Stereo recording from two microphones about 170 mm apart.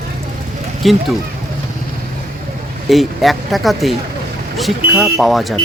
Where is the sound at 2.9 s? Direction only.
Centre (ahead or behind).